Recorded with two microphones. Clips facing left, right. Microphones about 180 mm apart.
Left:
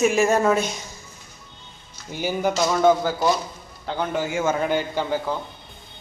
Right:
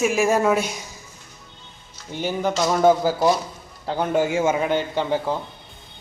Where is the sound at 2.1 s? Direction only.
10° left (ahead or behind).